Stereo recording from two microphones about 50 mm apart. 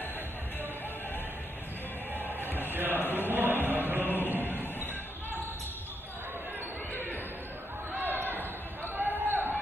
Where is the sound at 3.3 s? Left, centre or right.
Right.